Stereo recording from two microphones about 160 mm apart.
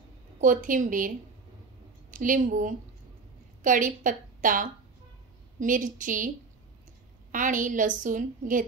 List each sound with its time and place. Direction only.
0.4 s a woman's voice: 55° right (ahead or behind)